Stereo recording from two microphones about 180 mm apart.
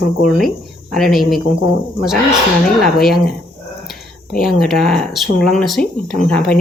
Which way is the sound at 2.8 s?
Centre (ahead or behind).